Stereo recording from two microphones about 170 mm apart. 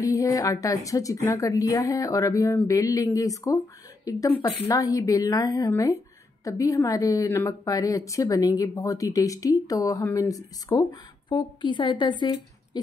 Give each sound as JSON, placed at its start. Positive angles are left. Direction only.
{"t": 0.0, "sound": "a woman's voice", "side_deg": 20}